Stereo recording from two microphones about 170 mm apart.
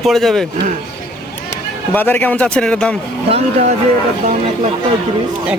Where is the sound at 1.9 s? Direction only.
10° left (ahead or behind).